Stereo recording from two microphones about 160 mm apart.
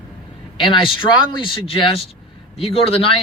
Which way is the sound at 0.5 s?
30° left (ahead or behind).